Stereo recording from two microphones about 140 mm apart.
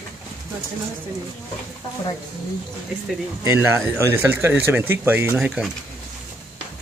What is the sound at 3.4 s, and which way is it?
Speech, 20° right (ahead or behind).